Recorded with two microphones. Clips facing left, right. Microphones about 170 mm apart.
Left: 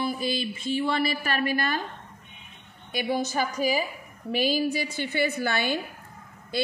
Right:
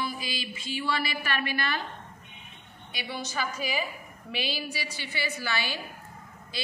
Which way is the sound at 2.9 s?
50° left (ahead or behind).